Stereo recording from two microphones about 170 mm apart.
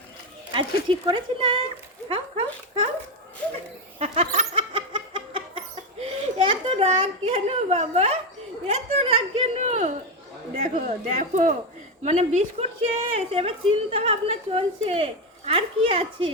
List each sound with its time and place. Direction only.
0.5 s a woman's voice: 30° right (ahead or behind)
3.9 s a sound: 40° right (ahead or behind)
8.6 s a woman's voice: 35° right (ahead or behind)